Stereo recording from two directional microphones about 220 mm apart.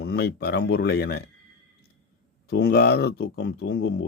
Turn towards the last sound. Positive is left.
turn(degrees=50)  # may be behind; listen again after turning